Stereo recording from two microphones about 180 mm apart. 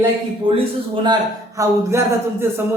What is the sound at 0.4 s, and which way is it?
Speech, 30° right (ahead or behind).